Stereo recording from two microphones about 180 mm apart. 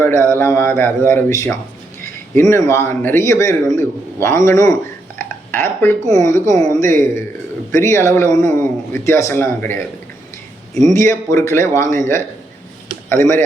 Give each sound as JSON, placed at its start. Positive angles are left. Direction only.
{"t": 0.0, "sound": "a man's voice", "side_deg": 15}
{"t": 10.9, "sound": "a man's voice", "side_deg": 15}